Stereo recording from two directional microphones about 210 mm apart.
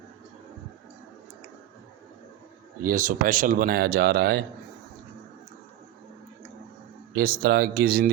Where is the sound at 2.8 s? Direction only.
40° right (ahead or behind).